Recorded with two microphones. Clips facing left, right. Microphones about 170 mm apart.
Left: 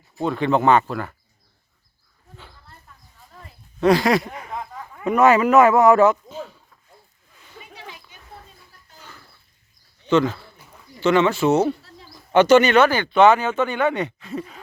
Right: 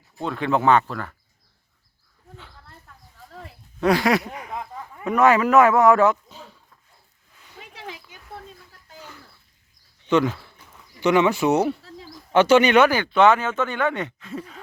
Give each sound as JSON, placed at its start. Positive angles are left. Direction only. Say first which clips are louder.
{"t": 0.2, "sound": "speech", "louder": "left 3 dB", "side_deg": 0}
{"t": 3.8, "sound": "speech", "louder": "left 2 dB", "side_deg": -5}
{"t": 5.0, "sound": "speech", "louder": "left 2 dB", "side_deg": 0}
{"t": 10.1, "sound": "speech", "louder": "left 1 dB", "side_deg": -10}
{"t": 11.8, "sound": "a sound", "louder": "right 5 dB", "side_deg": -90}
{"t": 12.3, "sound": "speech", "louder": "left 2 dB", "side_deg": -5}
{"t": 12.9, "sound": "speech", "louder": "left 2 dB", "side_deg": 0}